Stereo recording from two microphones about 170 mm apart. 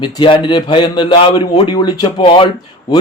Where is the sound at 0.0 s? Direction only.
30° left (ahead or behind).